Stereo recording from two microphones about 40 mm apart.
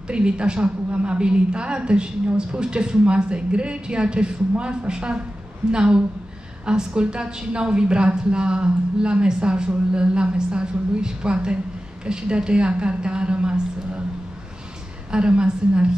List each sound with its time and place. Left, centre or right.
0.1 s a woman's voice: right
15.0 s a woman's voice: right